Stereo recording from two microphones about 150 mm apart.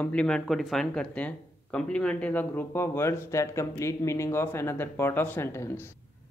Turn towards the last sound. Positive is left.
turn(degrees=15)  # may be behind; listen again after turning